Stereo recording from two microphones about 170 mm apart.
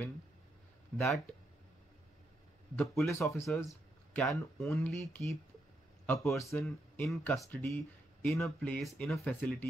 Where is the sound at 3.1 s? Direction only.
15° left (ahead or behind).